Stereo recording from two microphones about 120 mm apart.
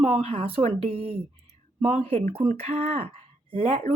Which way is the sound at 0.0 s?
60° right (ahead or behind).